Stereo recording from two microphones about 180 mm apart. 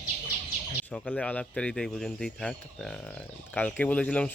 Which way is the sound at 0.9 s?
5° left (ahead or behind).